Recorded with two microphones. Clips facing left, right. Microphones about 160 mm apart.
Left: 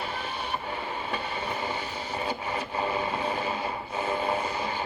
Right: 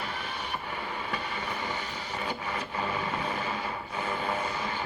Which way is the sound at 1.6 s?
20° left (ahead or behind).